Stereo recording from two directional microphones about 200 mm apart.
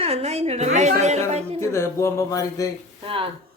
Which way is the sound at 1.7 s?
15° left (ahead or behind).